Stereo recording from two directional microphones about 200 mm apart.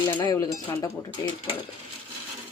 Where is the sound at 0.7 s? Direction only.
15° left (ahead or behind).